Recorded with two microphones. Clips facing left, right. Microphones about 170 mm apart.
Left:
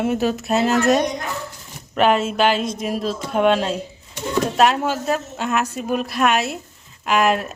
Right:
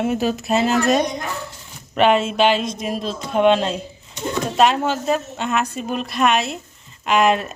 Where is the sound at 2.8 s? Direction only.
5° left (ahead or behind).